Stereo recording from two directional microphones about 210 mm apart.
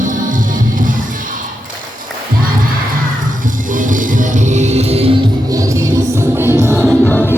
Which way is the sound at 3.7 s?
40° right (ahead or behind).